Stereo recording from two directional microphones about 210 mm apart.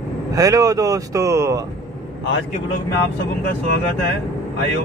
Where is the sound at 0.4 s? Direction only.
15° right (ahead or behind).